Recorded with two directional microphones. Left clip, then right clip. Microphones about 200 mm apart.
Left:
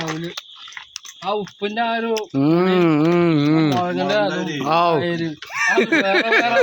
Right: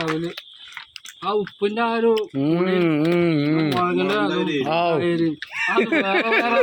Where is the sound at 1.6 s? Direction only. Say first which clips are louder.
Right 2 dB; 15° left (ahead or behind).